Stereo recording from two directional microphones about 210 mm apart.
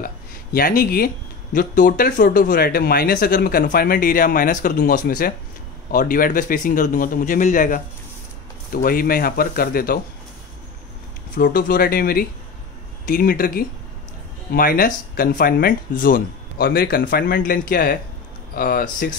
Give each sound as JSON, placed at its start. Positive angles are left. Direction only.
{"t": 0.0, "sound": "a man's voice", "side_deg": 45}
{"t": 11.4, "sound": "speech", "side_deg": 45}